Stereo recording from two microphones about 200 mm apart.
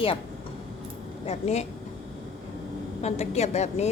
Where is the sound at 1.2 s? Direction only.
35° left (ahead or behind).